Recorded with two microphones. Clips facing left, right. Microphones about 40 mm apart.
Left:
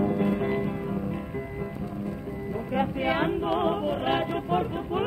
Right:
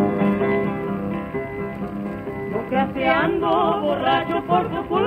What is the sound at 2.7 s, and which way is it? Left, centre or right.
Music, right.